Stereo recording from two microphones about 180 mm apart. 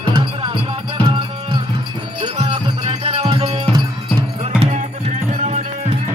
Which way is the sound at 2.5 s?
35° right (ahead or behind).